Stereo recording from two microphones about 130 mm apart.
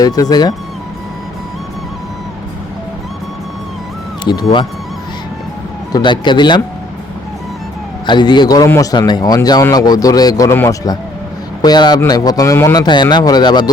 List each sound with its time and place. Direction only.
0.0 s a man's voice: 30° left (ahead or behind)
4.2 s speech: 35° left (ahead or behind)
5.9 s a man's voice: 35° left (ahead or behind)
8.0 s a man's voice: 35° left (ahead or behind)